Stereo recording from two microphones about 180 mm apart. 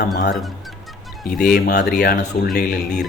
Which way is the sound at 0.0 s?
65° left (ahead or behind).